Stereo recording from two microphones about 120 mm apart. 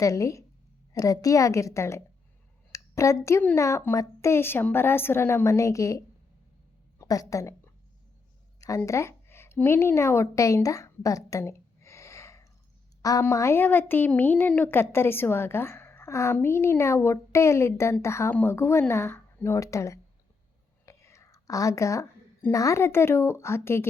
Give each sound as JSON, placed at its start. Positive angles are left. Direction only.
{"t": 0.0, "sound": "a woman's voice", "side_deg": 25}
{"t": 7.0, "sound": "a woman's voice", "side_deg": 25}
{"t": 8.9, "sound": "a woman's voice", "side_deg": 25}
{"t": 20.8, "sound": "whispering", "side_deg": 25}
{"t": 22.5, "sound": "a woman's voice", "side_deg": 25}